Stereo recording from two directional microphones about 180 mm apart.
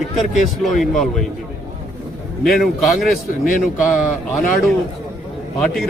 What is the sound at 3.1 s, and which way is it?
Speech, 50° left (ahead or behind).